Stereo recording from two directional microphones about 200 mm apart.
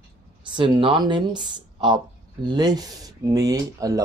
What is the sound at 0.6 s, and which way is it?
Speech, 25° right (ahead or behind).